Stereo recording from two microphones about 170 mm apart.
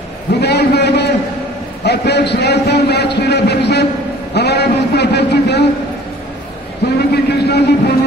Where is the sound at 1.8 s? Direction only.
75° left (ahead or behind).